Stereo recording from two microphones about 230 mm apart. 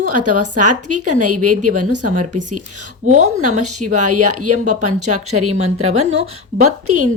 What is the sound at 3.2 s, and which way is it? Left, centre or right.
Speech, right.